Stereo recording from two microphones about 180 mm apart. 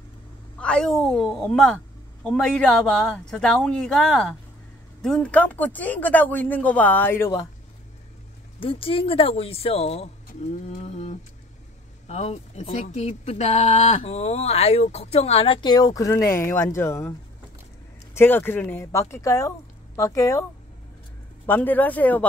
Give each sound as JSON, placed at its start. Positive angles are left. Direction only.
{"t": 0.6, "sound": "speech", "side_deg": 5}
{"t": 8.5, "sound": "speech", "side_deg": 30}
{"t": 10.5, "sound": "a sound", "side_deg": 35}
{"t": 12.1, "sound": "speech", "side_deg": 35}
{"t": 18.1, "sound": "speech", "side_deg": 10}
{"t": 21.5, "sound": "speech", "side_deg": 10}